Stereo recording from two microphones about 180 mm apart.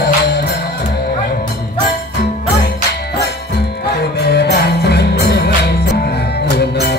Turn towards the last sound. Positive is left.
turn(degrees=60)  # may be behind; listen again after turning